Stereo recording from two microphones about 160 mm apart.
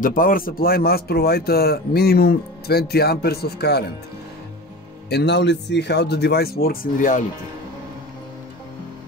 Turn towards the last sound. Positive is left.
turn(degrees=60)  # may be behind; listen again after turning